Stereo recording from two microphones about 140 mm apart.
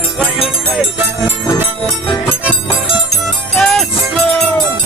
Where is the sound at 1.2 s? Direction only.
20° left (ahead or behind).